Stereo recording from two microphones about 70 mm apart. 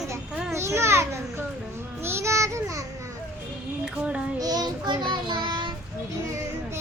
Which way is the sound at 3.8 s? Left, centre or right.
Centre.